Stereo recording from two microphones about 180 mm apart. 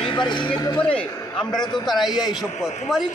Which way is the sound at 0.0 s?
25° left (ahead or behind).